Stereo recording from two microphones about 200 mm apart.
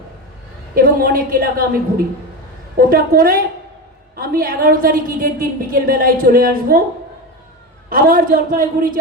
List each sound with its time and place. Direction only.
0.8 s a woman's voice: 45° right (ahead or behind)
7.9 s a woman's voice: 45° right (ahead or behind)